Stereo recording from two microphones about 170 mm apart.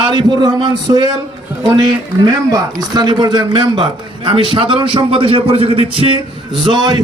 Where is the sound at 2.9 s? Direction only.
25° right (ahead or behind).